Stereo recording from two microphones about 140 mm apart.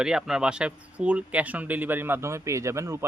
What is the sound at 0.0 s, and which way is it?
Speech, 5° right (ahead or behind).